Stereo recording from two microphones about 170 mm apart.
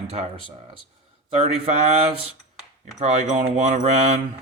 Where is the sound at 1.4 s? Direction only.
35° right (ahead or behind).